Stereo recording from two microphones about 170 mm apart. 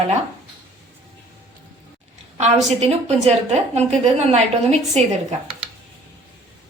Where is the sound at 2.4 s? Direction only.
40° right (ahead or behind).